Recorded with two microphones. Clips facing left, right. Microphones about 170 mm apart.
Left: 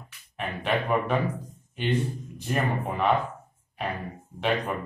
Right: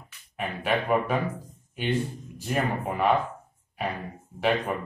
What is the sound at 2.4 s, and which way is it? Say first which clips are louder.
Speech: even; centre (ahead or behind).